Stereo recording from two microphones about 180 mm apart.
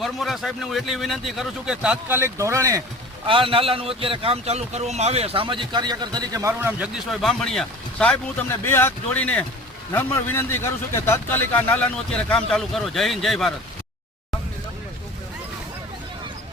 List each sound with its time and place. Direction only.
0.0 s speech: centre (ahead or behind); by 2.8 s 15° right (ahead or behind)
3.2 s speech: 30° right (ahead or behind)
6.6 s a man's voice: 10° right (ahead or behind)